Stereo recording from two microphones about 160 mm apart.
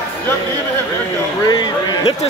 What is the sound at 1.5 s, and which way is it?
Speech, 25° left (ahead or behind).